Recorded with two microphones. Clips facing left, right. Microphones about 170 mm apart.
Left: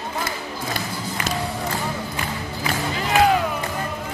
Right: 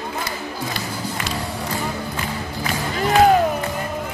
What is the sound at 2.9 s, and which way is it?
Music, 45° right (ahead or behind).